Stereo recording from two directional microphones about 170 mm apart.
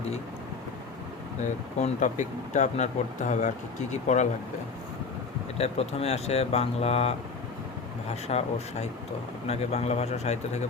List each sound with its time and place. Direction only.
1.4 s speech: 45° left (ahead or behind)
5.5 s speech: 40° left (ahead or behind)